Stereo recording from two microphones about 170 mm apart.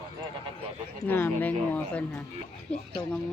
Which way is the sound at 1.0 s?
10° left (ahead or behind).